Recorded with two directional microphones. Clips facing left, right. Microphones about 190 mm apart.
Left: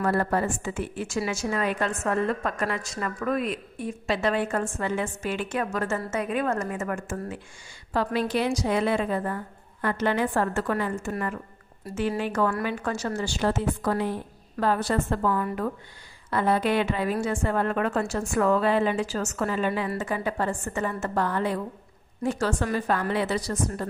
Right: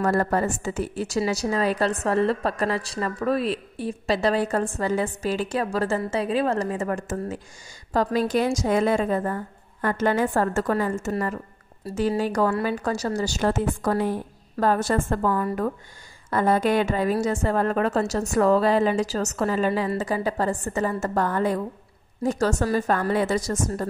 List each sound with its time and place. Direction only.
0.0 s a woman's voice: 45° right (ahead or behind)